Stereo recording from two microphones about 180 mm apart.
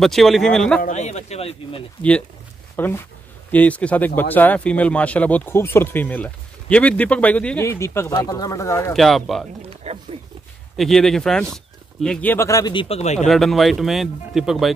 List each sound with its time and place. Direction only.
0.0 s speech: centre (ahead or behind)
0.8 s speech: 40° left (ahead or behind)
2.7 s speech: 10° left (ahead or behind)
8.9 s speech: centre (ahead or behind)
9.9 s a sound: 35° right (ahead or behind)
10.8 s speech: centre (ahead or behind); by 12.8 s 20° left (ahead or behind)
12.8 s speech: 35° left (ahead or behind)
13.3 s speech: centre (ahead or behind)